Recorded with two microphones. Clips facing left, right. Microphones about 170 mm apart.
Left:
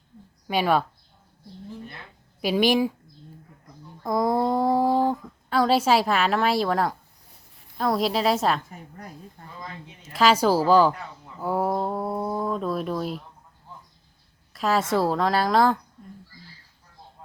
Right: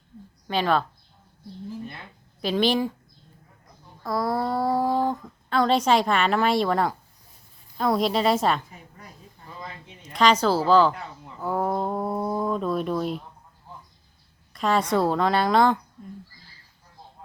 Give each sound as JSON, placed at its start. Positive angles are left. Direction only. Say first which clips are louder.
{"t": 0.4, "sound": "a woman's voice", "louder": "left 1 dB", "side_deg": 10}
{"t": 2.4, "sound": "a woman's voice", "louder": "left 2 dB", "side_deg": 10}
{"t": 4.0, "sound": "a woman's voice", "louder": "left 3 dB", "side_deg": 20}
{"t": 9.0, "sound": "a sound", "louder": "left 6 dB", "side_deg": 50}
{"t": 10.0, "sound": "a woman's voice", "louder": "even", "side_deg": 5}
{"t": 11.3, "sound": "a sound", "louder": "left 1 dB", "side_deg": 10}
{"t": 14.5, "sound": "a woman's voice", "louder": "even", "side_deg": 5}